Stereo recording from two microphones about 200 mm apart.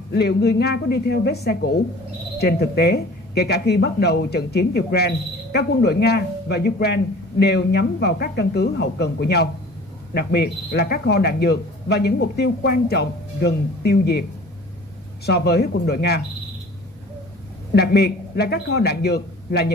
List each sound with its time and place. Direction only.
0.1 s speech: 55° left (ahead or behind)
15.2 s speech: 55° left (ahead or behind)
17.7 s speech: 55° left (ahead or behind)